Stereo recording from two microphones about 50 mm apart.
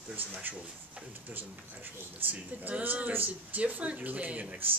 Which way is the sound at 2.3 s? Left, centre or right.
Right.